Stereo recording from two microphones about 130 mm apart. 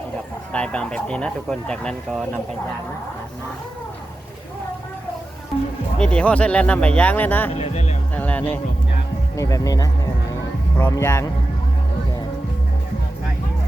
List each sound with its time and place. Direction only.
0.5 s speech: 10° left (ahead or behind)
6.0 s speech: 10° left (ahead or behind)
7.6 s speech: 60° left (ahead or behind)
8.1 s speech: 10° left (ahead or behind)
9.3 s speech: 25° left (ahead or behind)